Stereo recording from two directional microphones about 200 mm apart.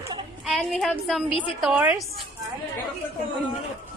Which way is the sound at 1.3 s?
25° left (ahead or behind).